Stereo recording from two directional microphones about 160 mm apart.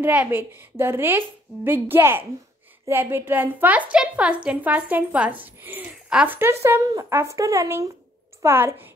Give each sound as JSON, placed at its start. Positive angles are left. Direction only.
{"t": 0.0, "sound": "a woman's voice", "side_deg": -10}